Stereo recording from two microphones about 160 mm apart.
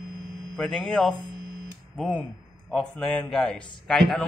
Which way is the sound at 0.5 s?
5° left (ahead or behind).